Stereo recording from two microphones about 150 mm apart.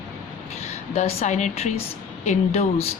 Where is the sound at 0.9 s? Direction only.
45° left (ahead or behind).